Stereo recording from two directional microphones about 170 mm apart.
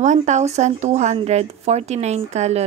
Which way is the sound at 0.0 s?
45° right (ahead or behind).